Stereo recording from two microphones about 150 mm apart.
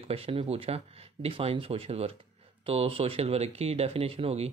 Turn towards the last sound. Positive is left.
turn(degrees=-40)  # may be behind; listen again after turning